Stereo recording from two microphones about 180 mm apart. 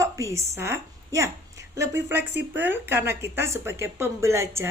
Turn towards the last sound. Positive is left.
turn(degrees=-15)  # may be behind; listen again after turning